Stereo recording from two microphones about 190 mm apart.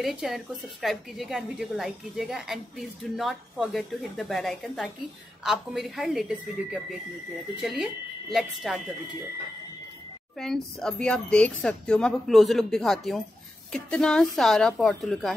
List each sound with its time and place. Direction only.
0.0 s a woman's voice: centre (ahead or behind)
10.4 s a woman's voice: 5° left (ahead or behind)